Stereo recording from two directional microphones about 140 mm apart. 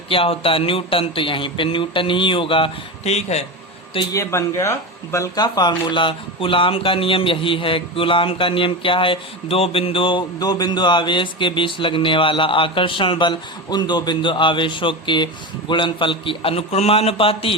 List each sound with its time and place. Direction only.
0.1 s speech: 40° left (ahead or behind)
4.1 s speech: 20° left (ahead or behind); by 17.5 s 40° left (ahead or behind)